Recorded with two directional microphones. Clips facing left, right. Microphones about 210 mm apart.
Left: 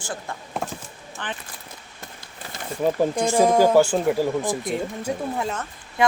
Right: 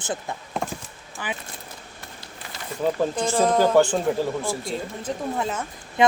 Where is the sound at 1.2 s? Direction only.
10° right (ahead or behind).